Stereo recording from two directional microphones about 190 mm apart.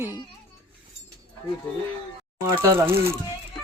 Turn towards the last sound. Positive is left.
turn(degrees=-10)  # may be behind; listen again after turning